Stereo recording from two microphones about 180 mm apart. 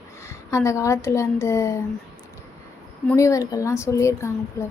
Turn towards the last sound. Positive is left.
turn(degrees=15)  # may be behind; listen again after turning